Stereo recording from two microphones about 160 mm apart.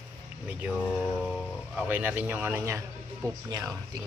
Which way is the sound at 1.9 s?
10° right (ahead or behind).